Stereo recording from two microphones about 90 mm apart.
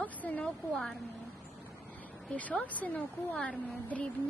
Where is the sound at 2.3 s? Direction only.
15° left (ahead or behind).